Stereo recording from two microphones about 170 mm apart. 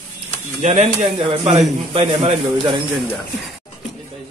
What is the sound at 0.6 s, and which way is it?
A man's voice, 45° right (ahead or behind).